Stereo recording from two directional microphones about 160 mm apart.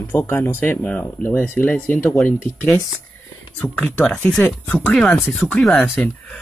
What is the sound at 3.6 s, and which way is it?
Speech, 10° left (ahead or behind).